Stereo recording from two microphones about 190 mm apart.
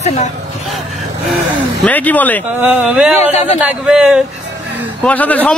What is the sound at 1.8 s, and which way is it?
Speech, 10° left (ahead or behind).